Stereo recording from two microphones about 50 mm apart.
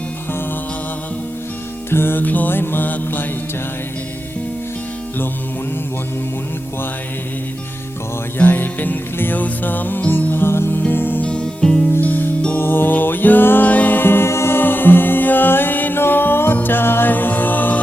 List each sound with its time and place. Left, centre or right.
1.9 s music: left
2.2 s music: left
8.4 s music: left
10.8 s music: left
11.2 s music: left
11.9 s music: left
14.3 s music: left
14.6 s music: left